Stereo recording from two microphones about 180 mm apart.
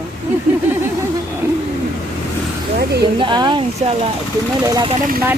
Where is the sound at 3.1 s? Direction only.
25° right (ahead or behind).